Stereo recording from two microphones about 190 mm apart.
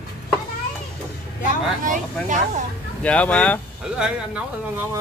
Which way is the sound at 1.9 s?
40° right (ahead or behind).